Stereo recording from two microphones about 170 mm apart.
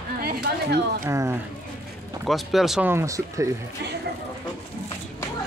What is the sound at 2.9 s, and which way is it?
Speech, 15° right (ahead or behind).